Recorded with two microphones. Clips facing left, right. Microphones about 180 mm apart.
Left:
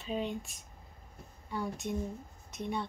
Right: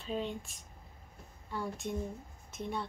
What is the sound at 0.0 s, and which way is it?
Speech, centre (ahead or behind).